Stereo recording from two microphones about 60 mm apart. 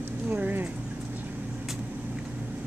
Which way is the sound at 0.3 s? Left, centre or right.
Right.